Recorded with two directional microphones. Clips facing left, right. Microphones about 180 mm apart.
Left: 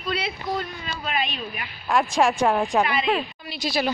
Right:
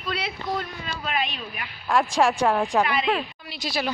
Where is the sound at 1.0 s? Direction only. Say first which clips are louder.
Left 1 dB; 10° left (ahead or behind).